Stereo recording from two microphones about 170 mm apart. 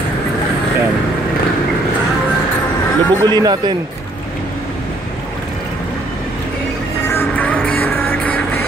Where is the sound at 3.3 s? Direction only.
25° right (ahead or behind).